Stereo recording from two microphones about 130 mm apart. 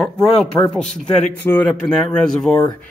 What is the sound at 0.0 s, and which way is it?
A man's voice, 5° left (ahead or behind).